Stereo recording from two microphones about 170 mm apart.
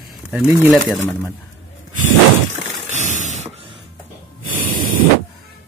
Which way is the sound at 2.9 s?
45° right (ahead or behind).